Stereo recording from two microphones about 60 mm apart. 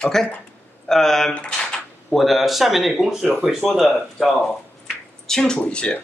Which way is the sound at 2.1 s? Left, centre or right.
Centre.